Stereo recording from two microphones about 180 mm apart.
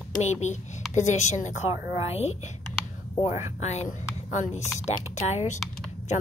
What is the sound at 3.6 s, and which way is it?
A woman's voice, 40° left (ahead or behind).